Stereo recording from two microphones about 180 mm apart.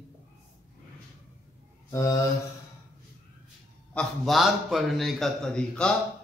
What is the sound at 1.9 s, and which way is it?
Mantra, 20° left (ahead or behind).